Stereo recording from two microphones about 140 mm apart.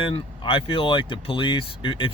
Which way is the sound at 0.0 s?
40° left (ahead or behind).